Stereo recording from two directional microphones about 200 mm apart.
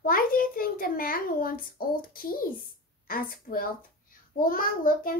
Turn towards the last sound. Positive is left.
turn(degrees=45)  # may be behind; listen again after turning